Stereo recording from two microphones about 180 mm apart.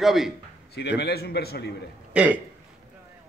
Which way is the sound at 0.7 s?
65° left (ahead or behind).